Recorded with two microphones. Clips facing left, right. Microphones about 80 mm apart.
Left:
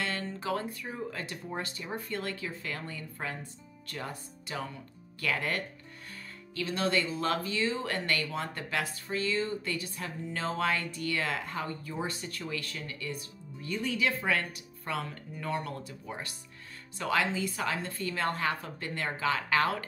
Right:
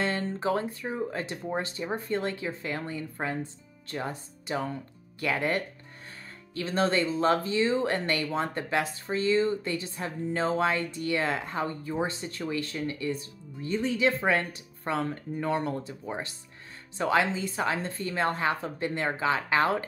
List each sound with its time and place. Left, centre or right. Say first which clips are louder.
0.0 s speech: right 6 dB; right